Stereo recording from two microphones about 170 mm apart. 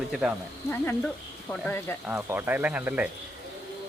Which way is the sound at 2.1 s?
10° right (ahead or behind).